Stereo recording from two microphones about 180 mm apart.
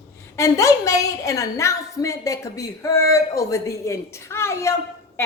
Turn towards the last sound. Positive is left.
turn(degrees=15)  # may be behind; listen again after turning